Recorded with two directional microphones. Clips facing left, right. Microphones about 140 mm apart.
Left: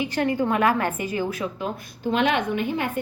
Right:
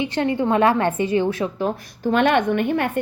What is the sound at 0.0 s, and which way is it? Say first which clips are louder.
A woman's voice: right 2 dB; 25° right (ahead or behind).